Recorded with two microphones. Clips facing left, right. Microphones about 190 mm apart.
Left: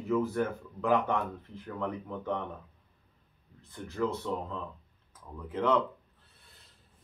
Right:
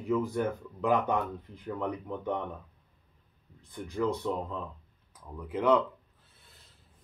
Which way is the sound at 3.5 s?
15° right (ahead or behind).